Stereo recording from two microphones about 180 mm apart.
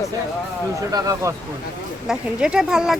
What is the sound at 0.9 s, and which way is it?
Speech, 20° right (ahead or behind).